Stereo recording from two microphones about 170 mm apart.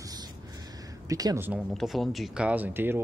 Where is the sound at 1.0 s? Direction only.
20° right (ahead or behind).